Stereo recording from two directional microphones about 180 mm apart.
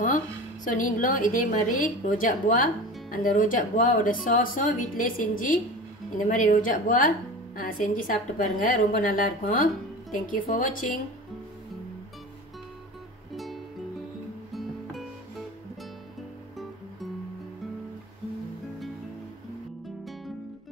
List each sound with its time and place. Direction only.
0.7 s speech: 50° left (ahead or behind)
14.5 s music: centre (ahead or behind)